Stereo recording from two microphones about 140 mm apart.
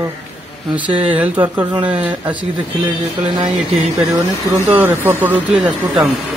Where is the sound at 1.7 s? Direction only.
40° right (ahead or behind).